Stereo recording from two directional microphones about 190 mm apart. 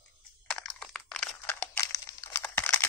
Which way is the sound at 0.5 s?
Centre (ahead or behind).